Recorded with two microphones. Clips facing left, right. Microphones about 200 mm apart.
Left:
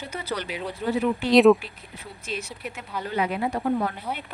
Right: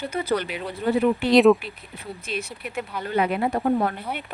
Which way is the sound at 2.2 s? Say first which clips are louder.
Right 1 dB; 60° right (ahead or behind).